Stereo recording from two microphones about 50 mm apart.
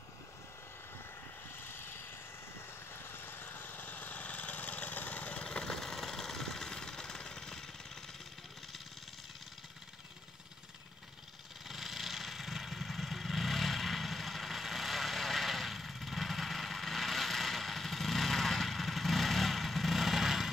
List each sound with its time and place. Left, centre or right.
1.6 s vehicle: left
5.4 s engine: centre
11.6 s vehicle: centre